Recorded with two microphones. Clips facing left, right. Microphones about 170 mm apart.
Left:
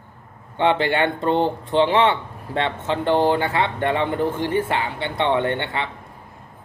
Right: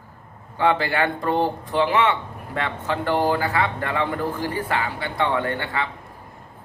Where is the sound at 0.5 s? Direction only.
25° left (ahead or behind).